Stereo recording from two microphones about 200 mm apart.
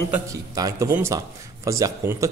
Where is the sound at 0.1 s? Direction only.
15° right (ahead or behind).